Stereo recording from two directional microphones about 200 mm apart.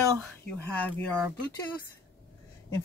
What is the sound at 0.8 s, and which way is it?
Speech, 5° left (ahead or behind).